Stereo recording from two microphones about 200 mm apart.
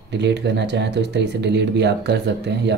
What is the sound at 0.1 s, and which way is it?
Speech, 60° right (ahead or behind).